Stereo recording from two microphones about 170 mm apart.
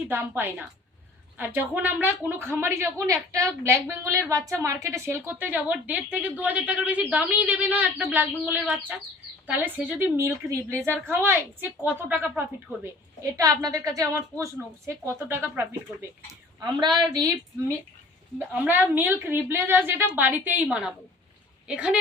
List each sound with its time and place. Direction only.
0.1 s a woman's voice: 10° right (ahead or behind)
13.3 s a woman's voice: 20° right (ahead or behind)
16.6 s a woman's voice: 25° right (ahead or behind)
18.3 s a woman's voice: 10° right (ahead or behind)